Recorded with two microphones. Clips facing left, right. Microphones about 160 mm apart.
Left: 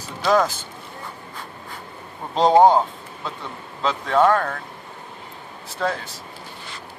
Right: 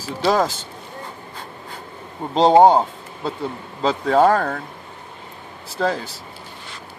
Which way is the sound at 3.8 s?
35° right (ahead or behind).